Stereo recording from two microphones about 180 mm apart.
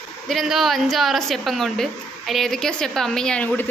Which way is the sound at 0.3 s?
Centre (ahead or behind).